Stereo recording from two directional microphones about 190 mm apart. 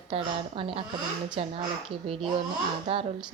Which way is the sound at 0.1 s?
30° right (ahead or behind).